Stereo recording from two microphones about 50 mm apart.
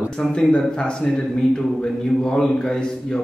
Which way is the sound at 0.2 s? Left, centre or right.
Centre.